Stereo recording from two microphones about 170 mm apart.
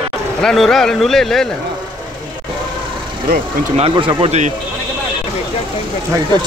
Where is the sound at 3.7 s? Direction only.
30° right (ahead or behind).